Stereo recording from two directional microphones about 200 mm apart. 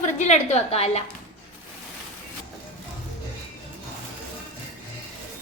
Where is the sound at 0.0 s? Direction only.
35° left (ahead or behind).